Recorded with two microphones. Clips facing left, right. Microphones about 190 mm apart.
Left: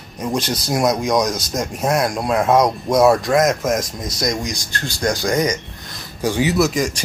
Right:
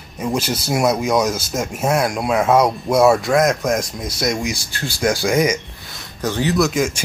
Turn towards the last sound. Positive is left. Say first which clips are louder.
# even
turn(degrees=0)  # may be behind; listen again after turning